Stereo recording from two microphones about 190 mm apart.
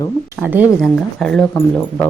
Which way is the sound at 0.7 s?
Centre (ahead or behind).